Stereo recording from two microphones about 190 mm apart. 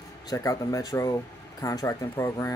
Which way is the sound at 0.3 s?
20° left (ahead or behind).